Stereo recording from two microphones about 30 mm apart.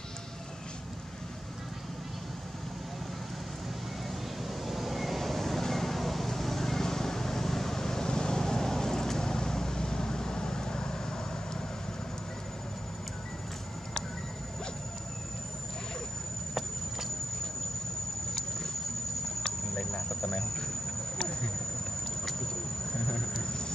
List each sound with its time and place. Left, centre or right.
4.6 s vehicle: centre; by 11.0 s left
19.7 s cricket: centre
22.2 s vehicle: centre
23.4 s a sound: left